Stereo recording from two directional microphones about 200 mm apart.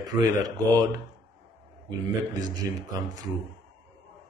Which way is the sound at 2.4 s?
20° right (ahead or behind).